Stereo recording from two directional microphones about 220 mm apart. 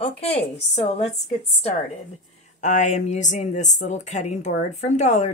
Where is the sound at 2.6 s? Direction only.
35° left (ahead or behind).